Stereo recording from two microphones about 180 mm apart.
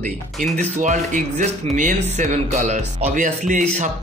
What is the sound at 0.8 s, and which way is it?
A man's voice, 45° right (ahead or behind).